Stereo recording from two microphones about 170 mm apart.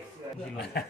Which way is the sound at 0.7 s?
70° left (ahead or behind).